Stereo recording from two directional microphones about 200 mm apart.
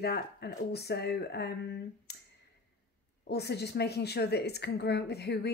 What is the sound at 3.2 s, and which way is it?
A woman's voice, 55° left (ahead or behind).